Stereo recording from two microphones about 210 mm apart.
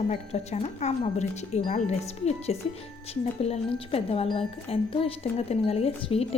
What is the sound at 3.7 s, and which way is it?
Speech, 25° left (ahead or behind).